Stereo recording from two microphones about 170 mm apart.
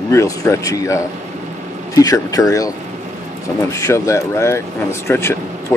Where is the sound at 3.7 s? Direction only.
15° left (ahead or behind).